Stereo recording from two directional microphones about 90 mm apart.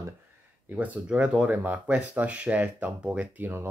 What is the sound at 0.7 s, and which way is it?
Speech, 15° right (ahead or behind).